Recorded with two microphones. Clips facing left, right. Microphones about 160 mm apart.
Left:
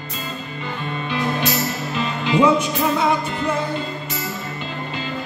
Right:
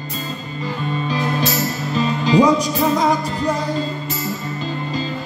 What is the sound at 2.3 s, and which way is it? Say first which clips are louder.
Music: right 2 dB; 35° right (ahead or behind).